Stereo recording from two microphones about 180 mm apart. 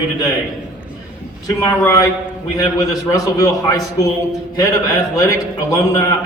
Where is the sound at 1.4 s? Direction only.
20° left (ahead or behind).